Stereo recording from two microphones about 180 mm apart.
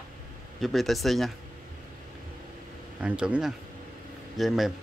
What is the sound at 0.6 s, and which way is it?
Speech, centre (ahead or behind).